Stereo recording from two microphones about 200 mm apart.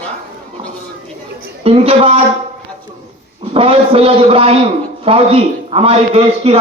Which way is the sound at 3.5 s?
30° right (ahead or behind).